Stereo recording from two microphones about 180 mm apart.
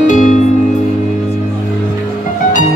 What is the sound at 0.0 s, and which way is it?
Music, 45° left (ahead or behind).